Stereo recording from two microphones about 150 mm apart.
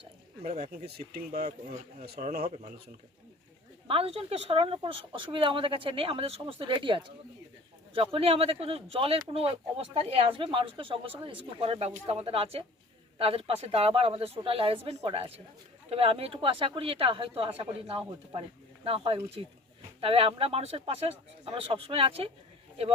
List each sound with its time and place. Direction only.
0.4 s speech: 45° right (ahead or behind)
2.1 s speech: 85° right
3.8 s speech: 40° right (ahead or behind)